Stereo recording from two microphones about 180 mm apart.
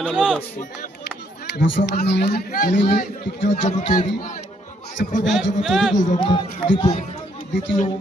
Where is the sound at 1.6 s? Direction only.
75° left (ahead or behind).